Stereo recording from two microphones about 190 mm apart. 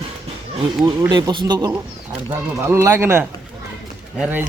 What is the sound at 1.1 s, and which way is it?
Speech, 20° right (ahead or behind).